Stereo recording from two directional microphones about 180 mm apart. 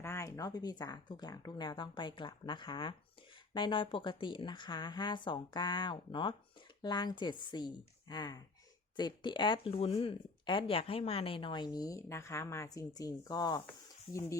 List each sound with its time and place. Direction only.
0.0 s speech: 15° left (ahead or behind)